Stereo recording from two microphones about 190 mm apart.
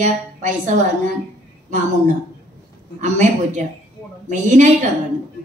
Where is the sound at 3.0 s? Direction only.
40° right (ahead or behind).